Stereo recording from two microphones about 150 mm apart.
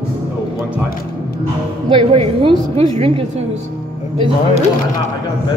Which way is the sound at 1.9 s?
35° right (ahead or behind).